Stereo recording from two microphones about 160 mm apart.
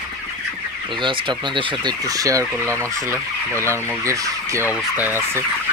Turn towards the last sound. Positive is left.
turn(degrees=-15)  # may be behind; listen again after turning